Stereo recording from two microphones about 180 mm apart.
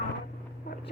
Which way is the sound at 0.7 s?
65° left (ahead or behind).